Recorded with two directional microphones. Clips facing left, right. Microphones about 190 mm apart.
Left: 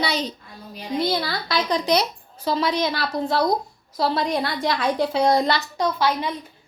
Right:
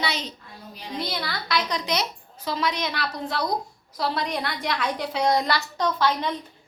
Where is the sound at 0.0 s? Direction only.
35° left (ahead or behind).